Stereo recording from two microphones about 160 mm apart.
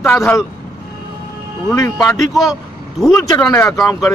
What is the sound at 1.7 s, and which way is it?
Speech, 20° left (ahead or behind).